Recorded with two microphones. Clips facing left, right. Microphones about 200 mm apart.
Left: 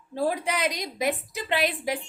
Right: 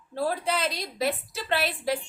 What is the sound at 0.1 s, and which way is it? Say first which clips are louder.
A woman's voice: left 1 dB; 15° left (ahead or behind).